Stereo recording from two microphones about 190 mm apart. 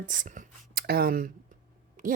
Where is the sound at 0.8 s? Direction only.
55° right (ahead or behind).